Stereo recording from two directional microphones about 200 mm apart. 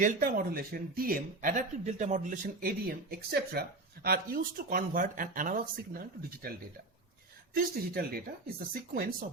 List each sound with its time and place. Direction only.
0.0 s speech: 45° right (ahead or behind)
7.5 s speech: 50° right (ahead or behind)